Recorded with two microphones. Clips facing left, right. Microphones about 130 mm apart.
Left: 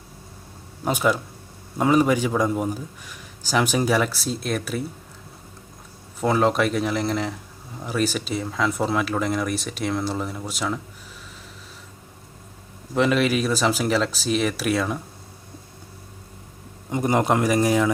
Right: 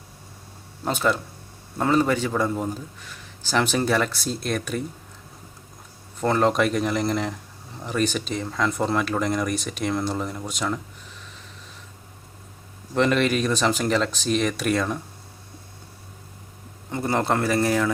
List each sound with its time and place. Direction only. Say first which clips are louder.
0.9 s a man's voice: left 2 dB; 10° left (ahead or behind)
6.1 s speech: even; 5° left (ahead or behind)
12.9 s speech: left 1 dB; 5° left (ahead or behind)
16.9 s a man's voice: left 3 dB; 15° left (ahead or behind)